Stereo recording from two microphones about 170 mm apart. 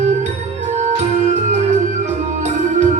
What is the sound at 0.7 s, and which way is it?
Music, 45° right (ahead or behind).